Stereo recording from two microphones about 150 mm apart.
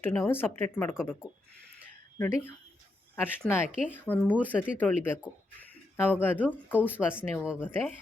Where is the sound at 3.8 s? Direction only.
10° left (ahead or behind).